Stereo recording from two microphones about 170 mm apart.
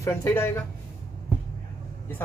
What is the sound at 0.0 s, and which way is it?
Speech, 20° left (ahead or behind).